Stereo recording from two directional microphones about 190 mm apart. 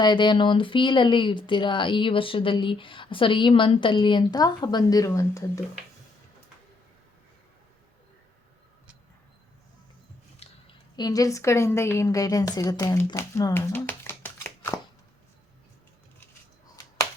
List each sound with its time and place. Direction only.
0.0 s speech: 25° left (ahead or behind)
10.4 s speech: 25° left (ahead or behind)